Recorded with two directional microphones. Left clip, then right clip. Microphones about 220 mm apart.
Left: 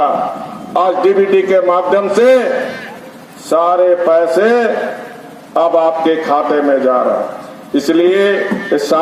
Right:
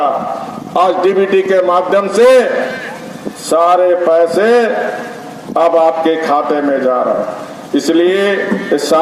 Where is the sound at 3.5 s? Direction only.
45° right (ahead or behind).